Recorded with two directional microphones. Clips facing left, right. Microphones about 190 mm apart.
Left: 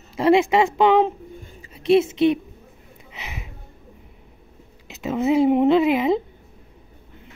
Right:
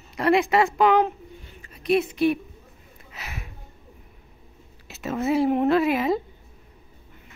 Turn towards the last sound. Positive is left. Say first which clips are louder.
# left 3 dB
turn(degrees=20)  # may be behind; listen again after turning